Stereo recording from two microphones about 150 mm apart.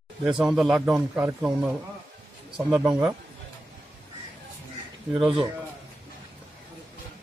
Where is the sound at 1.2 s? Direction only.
15° right (ahead or behind).